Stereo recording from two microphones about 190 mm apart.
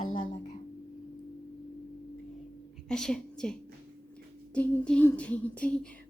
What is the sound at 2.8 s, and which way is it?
Speech, 5° left (ahead or behind).